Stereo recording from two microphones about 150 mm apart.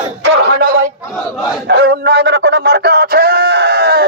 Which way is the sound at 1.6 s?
90° right.